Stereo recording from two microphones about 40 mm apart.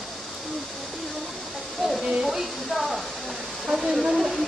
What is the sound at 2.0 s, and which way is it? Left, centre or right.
Speech, right.